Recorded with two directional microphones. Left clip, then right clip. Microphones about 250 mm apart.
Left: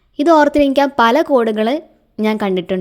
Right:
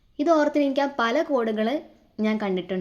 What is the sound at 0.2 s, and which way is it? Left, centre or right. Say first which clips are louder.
A woman's voice: left 10 dB; left.